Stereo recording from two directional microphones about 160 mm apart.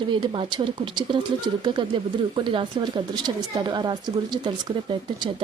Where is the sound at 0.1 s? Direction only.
30° right (ahead or behind).